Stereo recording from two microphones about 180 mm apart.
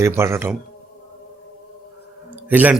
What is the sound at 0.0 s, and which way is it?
Speech, 15° right (ahead or behind).